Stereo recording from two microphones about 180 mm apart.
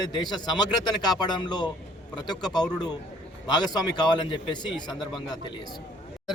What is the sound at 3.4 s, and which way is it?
Speech, 25° left (ahead or behind).